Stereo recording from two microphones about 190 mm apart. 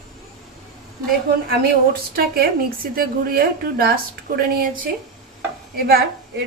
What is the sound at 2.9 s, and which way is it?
A woman's voice, 50° right (ahead or behind).